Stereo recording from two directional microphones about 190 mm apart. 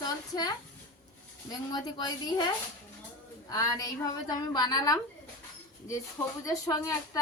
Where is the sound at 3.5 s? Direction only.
20° left (ahead or behind).